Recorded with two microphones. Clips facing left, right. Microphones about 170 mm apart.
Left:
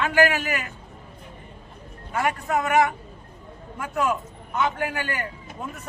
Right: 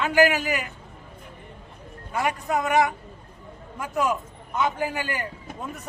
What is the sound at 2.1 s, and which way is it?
A man's voice, 15° right (ahead or behind).